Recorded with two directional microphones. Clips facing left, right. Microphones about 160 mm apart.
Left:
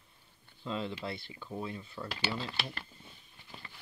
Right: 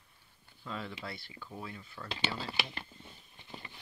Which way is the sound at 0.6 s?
20° left (ahead or behind).